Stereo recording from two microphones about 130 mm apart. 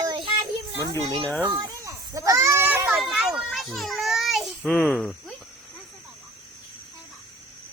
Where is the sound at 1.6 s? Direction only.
30° right (ahead or behind).